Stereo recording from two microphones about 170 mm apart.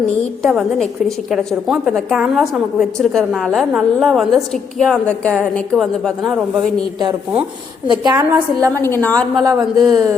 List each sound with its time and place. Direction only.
0.4 s a woman's voice: centre (ahead or behind)
7.9 s a man's voice: 25° right (ahead or behind)
8.8 s a woman's voice: 10° left (ahead or behind)
9.4 s a man's voice: 20° right (ahead or behind)